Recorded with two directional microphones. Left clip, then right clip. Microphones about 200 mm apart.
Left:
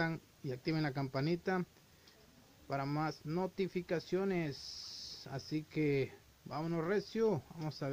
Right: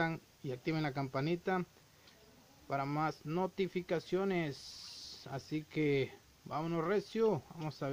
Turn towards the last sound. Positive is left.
turn(degrees=-10)  # may be behind; listen again after turning